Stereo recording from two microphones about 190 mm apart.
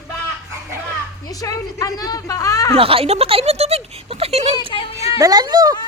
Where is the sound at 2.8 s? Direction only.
30° right (ahead or behind).